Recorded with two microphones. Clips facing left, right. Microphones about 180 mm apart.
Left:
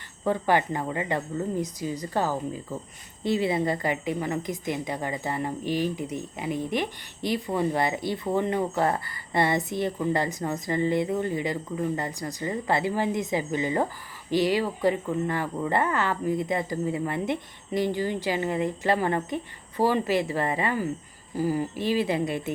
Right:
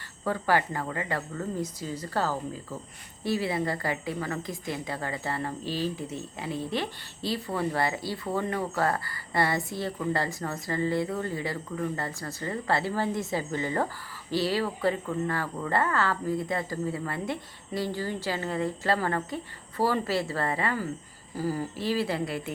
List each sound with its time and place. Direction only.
0.3 s a woman's voice: 20° left (ahead or behind)